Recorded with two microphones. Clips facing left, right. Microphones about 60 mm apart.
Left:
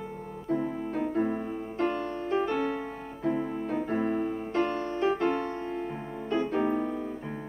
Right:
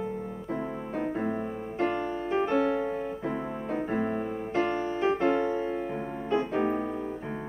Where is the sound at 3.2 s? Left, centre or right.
Centre.